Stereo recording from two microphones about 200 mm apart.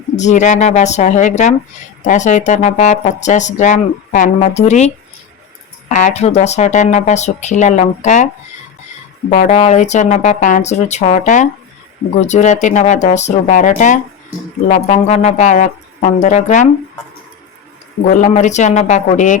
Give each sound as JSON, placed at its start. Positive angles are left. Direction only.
{"t": 0.2, "sound": "speech", "side_deg": 35}
{"t": 5.9, "sound": "speech", "side_deg": 35}
{"t": 9.3, "sound": "speech", "side_deg": 35}
{"t": 18.1, "sound": "speech", "side_deg": 40}